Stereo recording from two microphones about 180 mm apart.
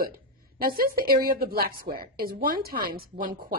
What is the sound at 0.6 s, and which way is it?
Speech, 55° right (ahead or behind).